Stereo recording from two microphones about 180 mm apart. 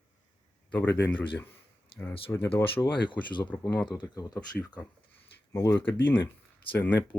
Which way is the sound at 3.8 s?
25° left (ahead or behind).